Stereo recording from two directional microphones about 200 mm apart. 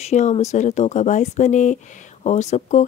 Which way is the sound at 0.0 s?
35° left (ahead or behind).